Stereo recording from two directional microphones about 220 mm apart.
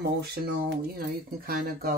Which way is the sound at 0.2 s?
45° right (ahead or behind).